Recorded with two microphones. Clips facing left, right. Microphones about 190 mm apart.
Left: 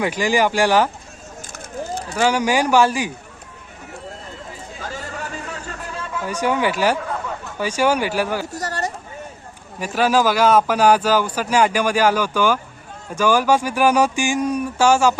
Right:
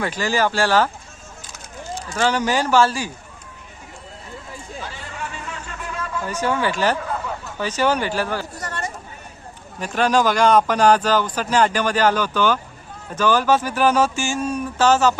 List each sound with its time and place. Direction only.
0.0 s speech: 15° left (ahead or behind)
1.5 s run: 60° left (ahead or behind)
2.1 s speech: 10° left (ahead or behind)
4.8 s a sound: 40° left (ahead or behind)
6.2 s speech: 15° left (ahead or behind)
8.5 s a sound: 40° left (ahead or behind)
9.8 s speech: 5° left (ahead or behind)